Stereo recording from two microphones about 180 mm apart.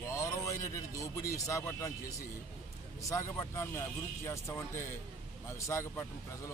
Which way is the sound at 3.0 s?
15° left (ahead or behind).